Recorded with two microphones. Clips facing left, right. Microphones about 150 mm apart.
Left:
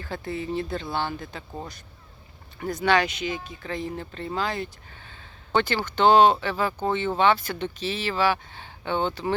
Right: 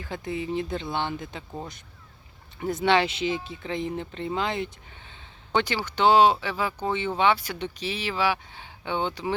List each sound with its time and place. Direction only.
0.0 s speech: 15° right (ahead or behind)
2.6 s speech: 25° right (ahead or behind)